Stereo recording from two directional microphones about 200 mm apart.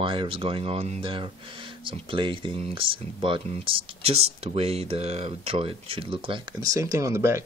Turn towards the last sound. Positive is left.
turn(degrees=-15)  # may be behind; listen again after turning